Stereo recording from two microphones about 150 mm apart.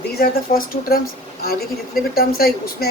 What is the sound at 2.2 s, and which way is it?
Speech, 85° left.